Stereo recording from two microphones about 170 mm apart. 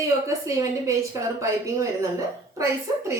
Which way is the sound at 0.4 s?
20° right (ahead or behind).